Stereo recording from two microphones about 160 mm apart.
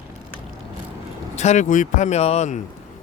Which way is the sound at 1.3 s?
45° left (ahead or behind).